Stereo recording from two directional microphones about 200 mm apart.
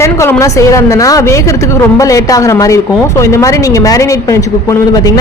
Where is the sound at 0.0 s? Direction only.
15° left (ahead or behind).